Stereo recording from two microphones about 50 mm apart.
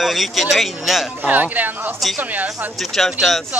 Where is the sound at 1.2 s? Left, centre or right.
Right.